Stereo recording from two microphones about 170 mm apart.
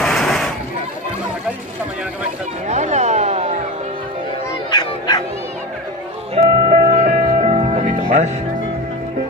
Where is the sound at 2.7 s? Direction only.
45° right (ahead or behind).